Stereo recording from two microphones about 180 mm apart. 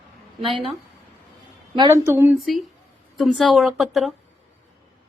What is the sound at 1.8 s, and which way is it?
Speech, 15° right (ahead or behind).